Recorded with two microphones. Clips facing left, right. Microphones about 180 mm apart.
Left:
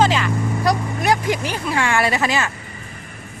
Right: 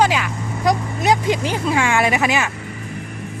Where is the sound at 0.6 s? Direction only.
20° right (ahead or behind).